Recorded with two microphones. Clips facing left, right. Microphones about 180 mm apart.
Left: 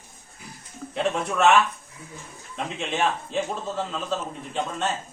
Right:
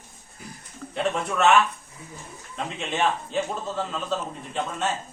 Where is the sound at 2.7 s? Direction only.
Centre (ahead or behind).